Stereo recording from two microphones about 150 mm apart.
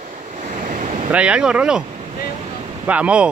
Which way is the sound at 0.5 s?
60° right (ahead or behind).